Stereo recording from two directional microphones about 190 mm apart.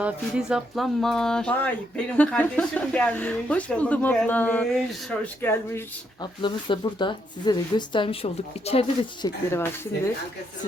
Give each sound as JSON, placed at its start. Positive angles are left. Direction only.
{"t": 0.0, "sound": "speech", "side_deg": -5}
{"t": 5.4, "sound": "speech", "side_deg": 10}
{"t": 6.4, "sound": "speech", "side_deg": 25}